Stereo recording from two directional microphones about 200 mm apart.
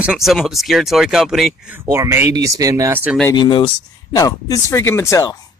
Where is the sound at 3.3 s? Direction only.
25° left (ahead or behind).